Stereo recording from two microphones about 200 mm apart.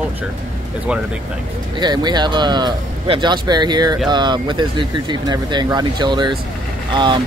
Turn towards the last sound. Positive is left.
turn(degrees=-25)  # may be behind; listen again after turning